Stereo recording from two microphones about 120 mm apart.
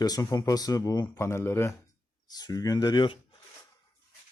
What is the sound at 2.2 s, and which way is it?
Speech, 35° left (ahead or behind).